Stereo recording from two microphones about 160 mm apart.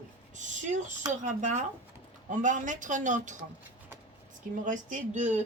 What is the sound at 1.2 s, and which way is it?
Speech, 50° right (ahead or behind).